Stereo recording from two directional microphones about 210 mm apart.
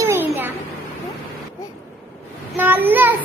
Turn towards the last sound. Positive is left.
turn(degrees=-10)  # may be behind; listen again after turning